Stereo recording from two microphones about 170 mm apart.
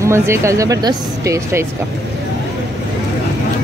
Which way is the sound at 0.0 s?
15° right (ahead or behind).